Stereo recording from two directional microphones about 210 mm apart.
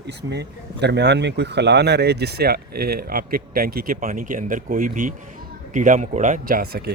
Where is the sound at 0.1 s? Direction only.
50° right (ahead or behind).